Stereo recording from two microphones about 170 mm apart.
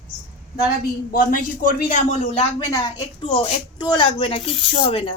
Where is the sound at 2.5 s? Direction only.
25° left (ahead or behind).